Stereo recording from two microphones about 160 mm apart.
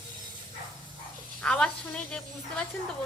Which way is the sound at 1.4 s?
5° left (ahead or behind).